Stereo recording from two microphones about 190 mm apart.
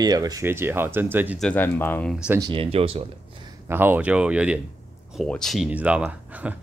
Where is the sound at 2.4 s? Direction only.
30° right (ahead or behind).